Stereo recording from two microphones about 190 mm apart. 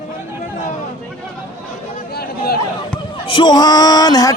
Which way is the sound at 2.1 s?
55° left (ahead or behind).